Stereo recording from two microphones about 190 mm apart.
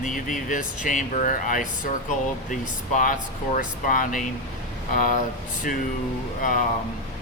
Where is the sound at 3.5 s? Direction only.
45° left (ahead or behind).